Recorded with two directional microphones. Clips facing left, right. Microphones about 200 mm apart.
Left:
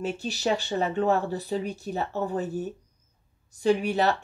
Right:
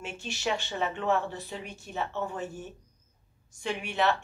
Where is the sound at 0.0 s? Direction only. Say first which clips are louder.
Left 6 dB; 35° left (ahead or behind).